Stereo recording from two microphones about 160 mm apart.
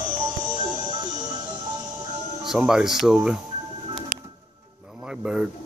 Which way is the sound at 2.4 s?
5° right (ahead or behind).